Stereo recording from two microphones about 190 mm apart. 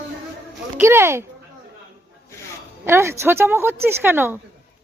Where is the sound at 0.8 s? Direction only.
15° right (ahead or behind).